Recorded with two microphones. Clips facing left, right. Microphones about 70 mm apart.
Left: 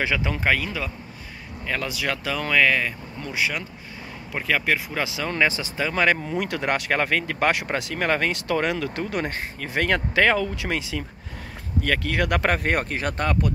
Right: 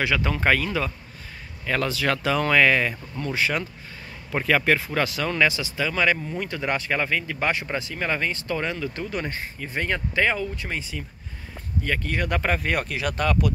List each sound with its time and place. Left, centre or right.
0.0 s speech: centre
3.2 s speech: centre
4.8 s speech: centre
5.3 s speech: left
6.2 s speech: left
12.6 s speech: left